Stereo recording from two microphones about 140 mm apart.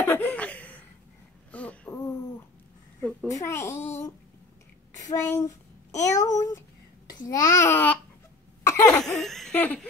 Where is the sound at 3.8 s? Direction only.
20° left (ahead or behind).